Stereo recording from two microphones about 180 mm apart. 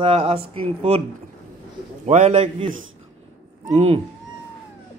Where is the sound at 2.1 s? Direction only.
40° right (ahead or behind).